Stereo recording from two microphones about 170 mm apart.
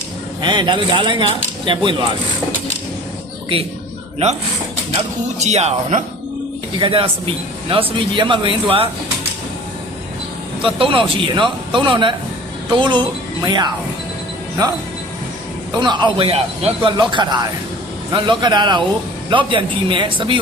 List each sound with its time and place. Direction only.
0.4 s a man's voice: 25° right (ahead or behind)
4.9 s speech: 40° right (ahead or behind)
10.6 s a man's voice: 30° right (ahead or behind)
15.7 s a man's voice: 25° right (ahead or behind)